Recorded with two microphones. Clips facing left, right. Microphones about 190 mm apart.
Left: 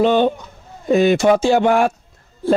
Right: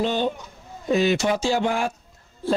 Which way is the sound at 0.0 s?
60° left (ahead or behind).